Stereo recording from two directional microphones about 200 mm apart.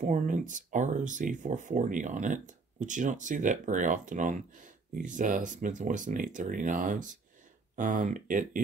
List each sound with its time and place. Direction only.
0.0 s speech: 40° right (ahead or behind)